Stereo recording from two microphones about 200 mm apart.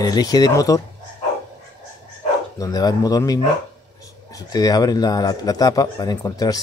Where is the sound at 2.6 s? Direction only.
20° left (ahead or behind).